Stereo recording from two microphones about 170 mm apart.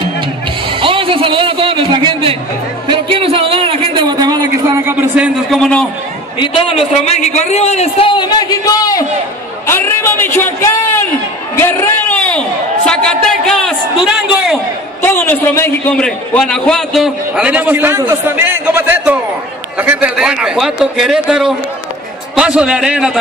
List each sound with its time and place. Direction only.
0.7 s a sound: 30° right (ahead or behind)
5.1 s a man's voice: 10° right (ahead or behind)
5.6 s a man's voice: 5° left (ahead or behind)
6.4 s a man's voice: 30° left (ahead or behind); by 10.9 s 15° left (ahead or behind)
11.6 s a sound: 15° left (ahead or behind)
15.0 s a man's voice: 15° left (ahead or behind); by 23.1 s 5° right (ahead or behind)